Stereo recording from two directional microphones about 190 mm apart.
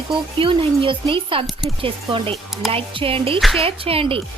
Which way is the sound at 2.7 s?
30° right (ahead or behind).